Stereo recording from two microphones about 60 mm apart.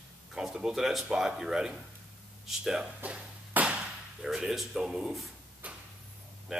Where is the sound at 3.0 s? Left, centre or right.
Right.